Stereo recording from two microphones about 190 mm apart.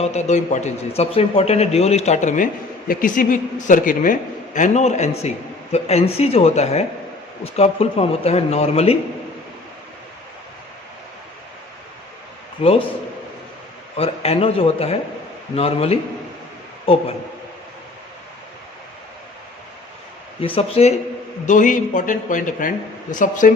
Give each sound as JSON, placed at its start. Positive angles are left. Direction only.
{"t": 0.0, "sound": "a man's voice", "side_deg": 35}
{"t": 12.6, "sound": "a man's voice", "side_deg": 30}
{"t": 13.9, "sound": "a man's voice", "side_deg": 30}
{"t": 20.4, "sound": "a man's voice", "side_deg": 30}
{"t": 21.4, "sound": "a man's voice", "side_deg": 40}